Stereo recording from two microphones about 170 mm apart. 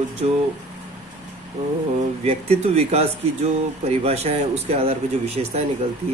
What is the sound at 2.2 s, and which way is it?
Speech, 35° right (ahead or behind).